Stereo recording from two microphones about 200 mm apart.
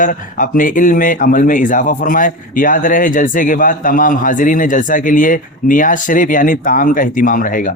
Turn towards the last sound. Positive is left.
turn(degrees=45)  # may be behind; listen again after turning